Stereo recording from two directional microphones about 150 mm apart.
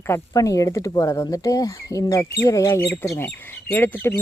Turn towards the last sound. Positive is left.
turn(degrees=15)  # may be behind; listen again after turning